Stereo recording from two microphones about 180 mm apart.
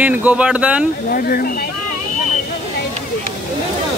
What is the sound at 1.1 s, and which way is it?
Speech, 55° left (ahead or behind).